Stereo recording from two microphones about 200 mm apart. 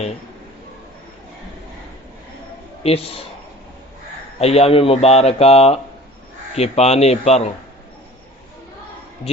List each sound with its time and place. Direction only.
2.8 s a man's voice: 30° left (ahead or behind)
4.4 s speech: 30° left (ahead or behind)